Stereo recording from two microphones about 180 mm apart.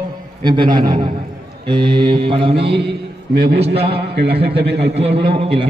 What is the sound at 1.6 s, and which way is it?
Mantra, 25° right (ahead or behind).